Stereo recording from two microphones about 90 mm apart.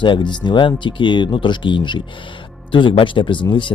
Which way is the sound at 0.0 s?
60° left (ahead or behind).